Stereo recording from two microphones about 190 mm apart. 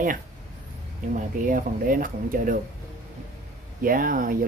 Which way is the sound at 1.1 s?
45° right (ahead or behind).